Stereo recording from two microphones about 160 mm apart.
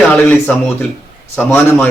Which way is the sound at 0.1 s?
10° left (ahead or behind).